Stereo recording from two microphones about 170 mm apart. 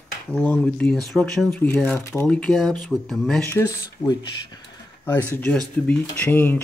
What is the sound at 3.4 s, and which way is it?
Speech, 15° left (ahead or behind).